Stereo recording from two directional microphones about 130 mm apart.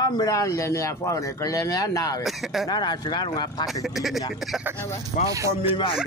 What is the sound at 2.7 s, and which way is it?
Speech, 35° left (ahead or behind).